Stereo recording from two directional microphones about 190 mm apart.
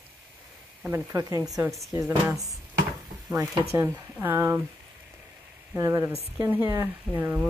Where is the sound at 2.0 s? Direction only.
15° right (ahead or behind).